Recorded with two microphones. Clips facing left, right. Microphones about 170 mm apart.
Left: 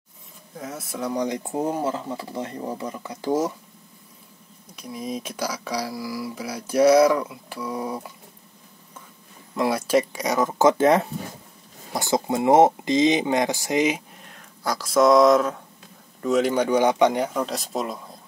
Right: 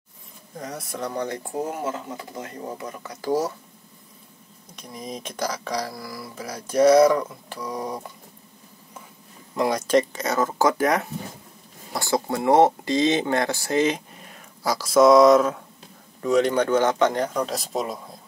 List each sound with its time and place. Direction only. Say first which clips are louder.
0.6 s speech: even; 5° left (ahead or behind)
1.5 s speech: left 3 dB; 30° left (ahead or behind)
4.7 s speech: left 4 dB; 5° left (ahead or behind)
9.6 s speech: right 1 dB; 5° left (ahead or behind)
14.6 s speech: right 2 dB; centre (ahead or behind)